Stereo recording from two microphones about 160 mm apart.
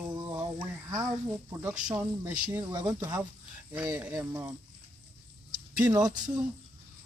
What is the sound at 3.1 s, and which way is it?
Speech, 10° right (ahead or behind).